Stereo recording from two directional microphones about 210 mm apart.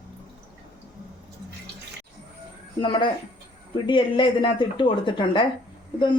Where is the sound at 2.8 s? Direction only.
25° left (ahead or behind).